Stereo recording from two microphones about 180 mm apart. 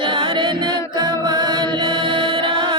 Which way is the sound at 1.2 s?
25° right (ahead or behind).